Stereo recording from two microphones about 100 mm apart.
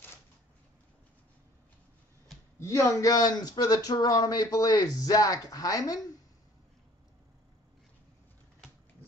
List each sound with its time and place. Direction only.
2.6 s speech: 30° left (ahead or behind)